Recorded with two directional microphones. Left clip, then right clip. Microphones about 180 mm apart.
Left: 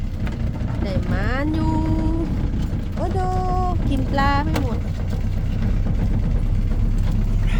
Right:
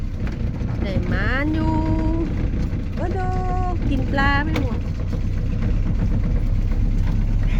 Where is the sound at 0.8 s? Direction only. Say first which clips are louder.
Right 1 dB; 5° left (ahead or behind).